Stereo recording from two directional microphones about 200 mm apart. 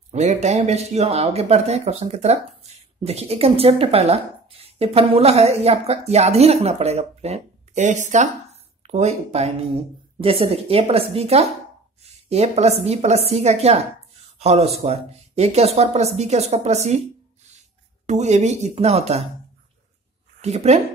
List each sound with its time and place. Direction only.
0.1 s speech: 35° right (ahead or behind)
18.0 s speech: 35° right (ahead or behind)
20.4 s speech: 35° right (ahead or behind)